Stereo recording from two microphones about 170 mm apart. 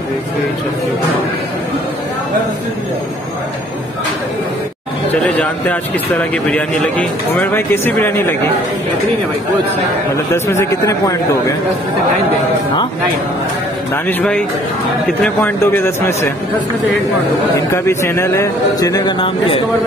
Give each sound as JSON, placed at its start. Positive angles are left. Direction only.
{"t": 5.4, "sound": "speech", "side_deg": 5}
{"t": 10.3, "sound": "speech", "side_deg": 15}
{"t": 14.0, "sound": "speech", "side_deg": 5}
{"t": 17.8, "sound": "a man's voice", "side_deg": 15}